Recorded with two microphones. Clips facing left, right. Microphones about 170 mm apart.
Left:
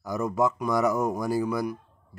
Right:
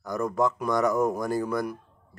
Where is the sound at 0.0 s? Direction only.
5° left (ahead or behind).